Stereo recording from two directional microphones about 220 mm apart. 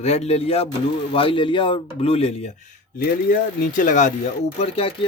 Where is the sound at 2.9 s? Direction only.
40° left (ahead or behind).